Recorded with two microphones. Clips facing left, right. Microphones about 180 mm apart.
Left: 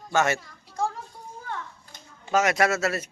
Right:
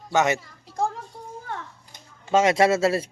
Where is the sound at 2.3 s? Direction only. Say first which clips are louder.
Right 4 dB; 25° right (ahead or behind).